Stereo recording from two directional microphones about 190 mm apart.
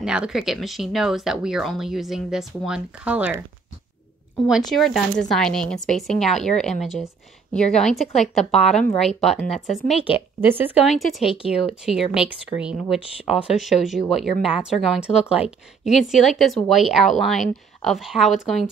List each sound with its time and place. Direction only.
0.0 s speech: 5° right (ahead or behind)
10.0 s a woman's voice: 25° left (ahead or behind)
10.9 s speech: centre (ahead or behind)
11.3 s speech: 30° left (ahead or behind)
11.8 s speech: 5° right (ahead or behind)